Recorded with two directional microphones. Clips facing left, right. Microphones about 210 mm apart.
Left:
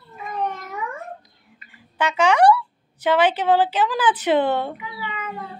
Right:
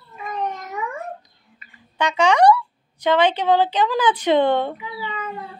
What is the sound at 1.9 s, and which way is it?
Speech, 5° left (ahead or behind).